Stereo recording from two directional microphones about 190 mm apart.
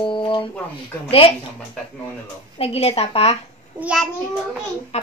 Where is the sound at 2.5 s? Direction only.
30° left (ahead or behind).